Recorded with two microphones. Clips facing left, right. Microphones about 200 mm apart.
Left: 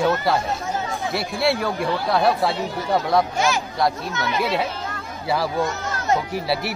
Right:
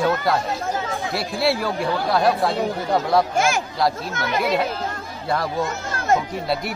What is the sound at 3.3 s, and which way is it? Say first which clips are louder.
Speech: right 1 dB; 50° right (ahead or behind).